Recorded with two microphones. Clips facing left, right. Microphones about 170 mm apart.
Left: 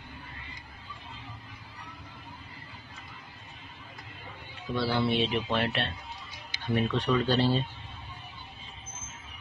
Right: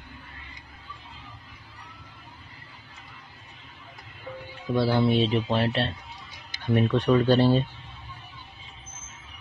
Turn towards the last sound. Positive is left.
turn(degrees=-55)  # may be behind; listen again after turning